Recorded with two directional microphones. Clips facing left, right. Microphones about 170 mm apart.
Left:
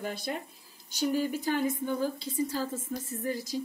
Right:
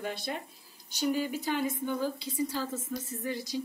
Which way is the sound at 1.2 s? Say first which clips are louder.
Left 2 dB; 50° left (ahead or behind).